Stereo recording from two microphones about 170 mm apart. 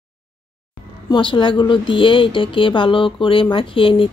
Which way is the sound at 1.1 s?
30° left (ahead or behind).